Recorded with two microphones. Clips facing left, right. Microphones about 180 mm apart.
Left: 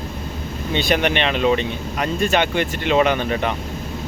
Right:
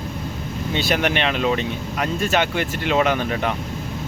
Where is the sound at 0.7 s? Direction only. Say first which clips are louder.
Left 2 dB; 5° right (ahead or behind).